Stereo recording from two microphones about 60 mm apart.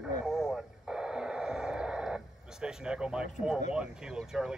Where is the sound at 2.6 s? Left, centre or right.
Centre.